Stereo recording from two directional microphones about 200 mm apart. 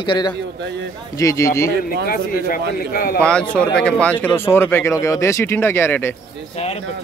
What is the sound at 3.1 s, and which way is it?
Speech, 5° left (ahead or behind).